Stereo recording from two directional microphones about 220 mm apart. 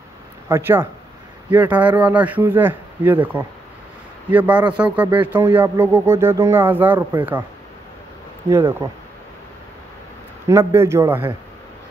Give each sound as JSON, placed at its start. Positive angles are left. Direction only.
{"t": 0.5, "sound": "speech", "side_deg": -10}
{"t": 8.5, "sound": "speech", "side_deg": -10}
{"t": 10.5, "sound": "speech", "side_deg": -10}